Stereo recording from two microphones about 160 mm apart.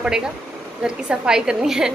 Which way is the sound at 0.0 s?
5° right (ahead or behind).